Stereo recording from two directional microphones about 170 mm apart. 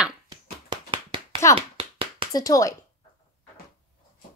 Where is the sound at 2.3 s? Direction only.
20° left (ahead or behind).